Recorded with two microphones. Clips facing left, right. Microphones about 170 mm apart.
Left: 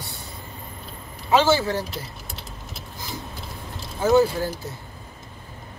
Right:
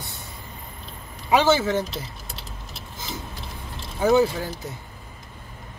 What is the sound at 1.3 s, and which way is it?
Speech, 20° right (ahead or behind).